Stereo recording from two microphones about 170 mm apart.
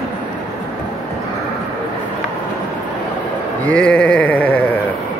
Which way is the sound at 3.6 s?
5° left (ahead or behind).